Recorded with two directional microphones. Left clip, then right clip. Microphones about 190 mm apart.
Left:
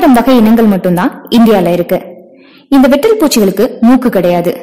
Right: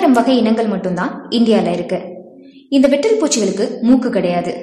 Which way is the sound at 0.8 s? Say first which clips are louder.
Left 8 dB; 45° left (ahead or behind).